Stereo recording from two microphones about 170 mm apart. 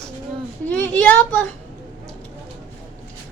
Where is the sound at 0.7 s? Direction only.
10° left (ahead or behind).